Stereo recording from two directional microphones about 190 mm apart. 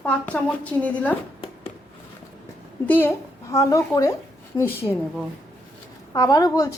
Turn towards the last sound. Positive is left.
turn(degrees=20)  # may be behind; listen again after turning